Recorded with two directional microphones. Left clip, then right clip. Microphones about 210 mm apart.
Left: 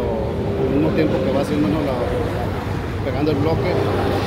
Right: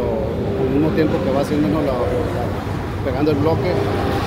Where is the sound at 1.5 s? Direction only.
55° right (ahead or behind).